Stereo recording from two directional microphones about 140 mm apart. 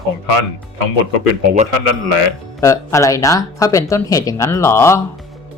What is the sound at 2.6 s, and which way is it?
A man's voice, 20° left (ahead or behind).